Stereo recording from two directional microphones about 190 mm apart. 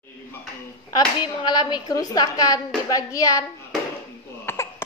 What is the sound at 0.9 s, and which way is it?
A woman's voice, 20° left (ahead or behind).